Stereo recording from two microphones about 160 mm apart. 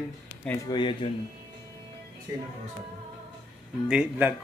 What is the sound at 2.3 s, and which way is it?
Speech, 20° right (ahead or behind).